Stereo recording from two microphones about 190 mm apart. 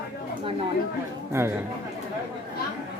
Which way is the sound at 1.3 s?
15° right (ahead or behind).